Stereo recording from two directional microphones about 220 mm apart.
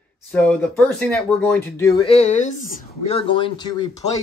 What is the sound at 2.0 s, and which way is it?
Speech, 30° left (ahead or behind).